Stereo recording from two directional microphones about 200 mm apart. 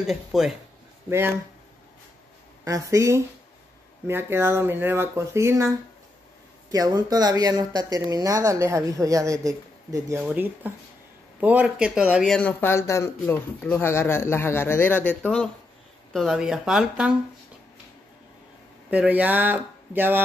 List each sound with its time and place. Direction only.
0.0 s speech: centre (ahead or behind)
2.6 s speech: 15° right (ahead or behind)
6.7 s speech: 20° right (ahead or behind)
18.9 s speech: 10° right (ahead or behind)